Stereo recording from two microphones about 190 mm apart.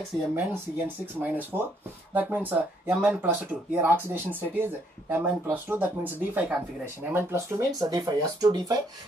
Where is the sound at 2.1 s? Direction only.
10° right (ahead or behind).